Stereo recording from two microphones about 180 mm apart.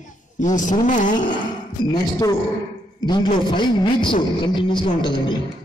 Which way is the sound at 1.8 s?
20° left (ahead or behind).